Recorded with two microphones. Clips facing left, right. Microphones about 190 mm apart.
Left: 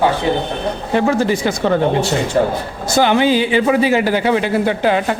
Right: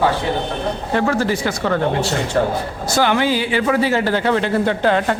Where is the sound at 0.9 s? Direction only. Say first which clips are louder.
Left 3 dB; 20° left (ahead or behind).